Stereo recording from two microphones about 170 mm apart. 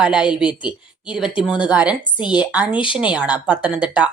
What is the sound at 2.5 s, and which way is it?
Speech, 5° right (ahead or behind).